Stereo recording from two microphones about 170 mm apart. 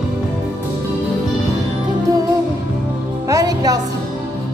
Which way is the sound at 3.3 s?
20° right (ahead or behind).